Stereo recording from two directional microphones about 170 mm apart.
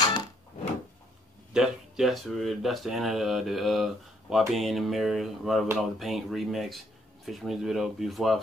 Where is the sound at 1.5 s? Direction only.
5° right (ahead or behind).